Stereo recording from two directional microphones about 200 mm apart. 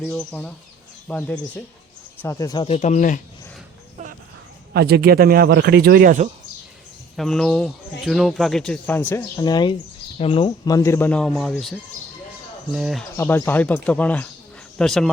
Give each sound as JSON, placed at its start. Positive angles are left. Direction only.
{"t": 0.1, "sound": "speech", "side_deg": 5}
{"t": 2.6, "sound": "speech", "side_deg": 35}
{"t": 4.7, "sound": "speech", "side_deg": -50}
{"t": 7.2, "sound": "speech", "side_deg": 0}
{"t": 13.1, "sound": "speech", "side_deg": 10}